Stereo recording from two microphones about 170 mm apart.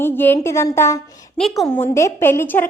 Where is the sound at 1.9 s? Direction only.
15° left (ahead or behind).